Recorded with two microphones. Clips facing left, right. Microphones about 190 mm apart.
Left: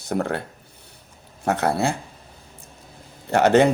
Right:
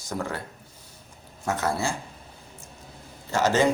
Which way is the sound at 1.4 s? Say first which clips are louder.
Left 5 dB; 60° left (ahead or behind).